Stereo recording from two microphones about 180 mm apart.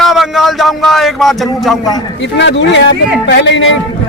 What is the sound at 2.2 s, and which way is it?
Speech, 90° left.